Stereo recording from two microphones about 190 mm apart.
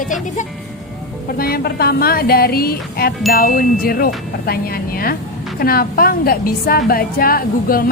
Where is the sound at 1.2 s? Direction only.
50° left (ahead or behind).